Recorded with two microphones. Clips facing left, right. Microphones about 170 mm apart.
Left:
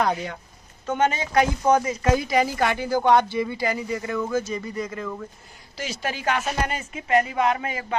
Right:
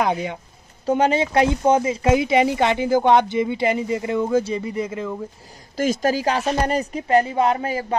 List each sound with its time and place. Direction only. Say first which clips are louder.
0.1 s speech: right 4 dB; 20° right (ahead or behind)
0.8 s speech: right 5 dB; 30° right (ahead or behind)
5.8 s speech: right 10 dB; 45° right (ahead or behind)